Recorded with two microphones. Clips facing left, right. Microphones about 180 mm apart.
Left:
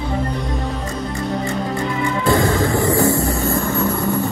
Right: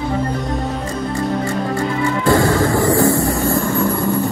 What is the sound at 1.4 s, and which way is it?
Music, 20° left (ahead or behind).